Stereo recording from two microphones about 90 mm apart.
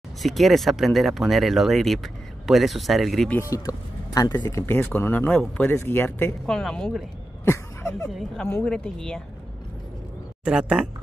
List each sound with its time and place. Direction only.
0.2 s speech: centre (ahead or behind)
3.4 s speech: 40° left (ahead or behind); by 6.3 s 25° left (ahead or behind)
6.4 s speech: 5° left (ahead or behind)
7.4 s a sound: 30° left (ahead or behind)
8.6 s speech: 10° left (ahead or behind)
10.4 s speech: 10° right (ahead or behind)